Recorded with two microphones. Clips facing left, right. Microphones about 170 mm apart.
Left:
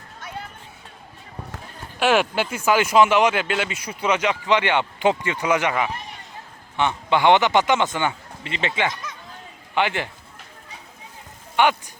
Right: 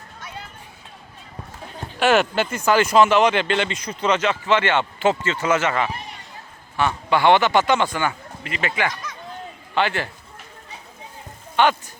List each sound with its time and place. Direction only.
2.0 s a man's voice: 5° left (ahead or behind)
11.5 s speech: 15° left (ahead or behind)